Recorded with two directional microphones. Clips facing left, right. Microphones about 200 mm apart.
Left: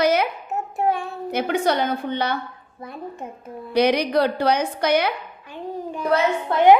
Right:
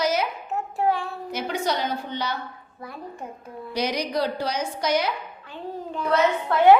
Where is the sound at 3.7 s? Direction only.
60° left (ahead or behind).